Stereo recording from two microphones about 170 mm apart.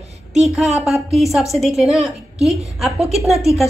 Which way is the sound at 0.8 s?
Centre (ahead or behind).